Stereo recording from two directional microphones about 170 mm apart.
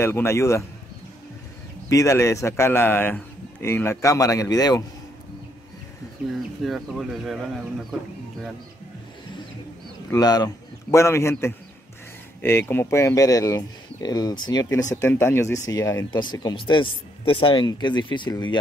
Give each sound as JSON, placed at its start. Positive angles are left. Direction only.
{"t": 0.0, "sound": "speech", "side_deg": 15}
{"t": 1.9, "sound": "speech", "side_deg": 20}
{"t": 6.6, "sound": "speech", "side_deg": 0}
{"t": 10.1, "sound": "a man's voice", "side_deg": 25}